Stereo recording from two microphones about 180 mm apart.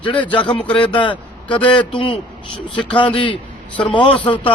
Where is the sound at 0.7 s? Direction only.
25° left (ahead or behind).